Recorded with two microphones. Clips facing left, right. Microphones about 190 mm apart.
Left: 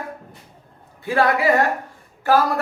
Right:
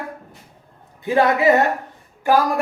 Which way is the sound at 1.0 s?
20° right (ahead or behind).